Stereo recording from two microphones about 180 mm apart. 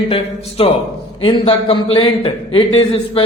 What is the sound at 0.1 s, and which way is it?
A man's voice, 30° left (ahead or behind).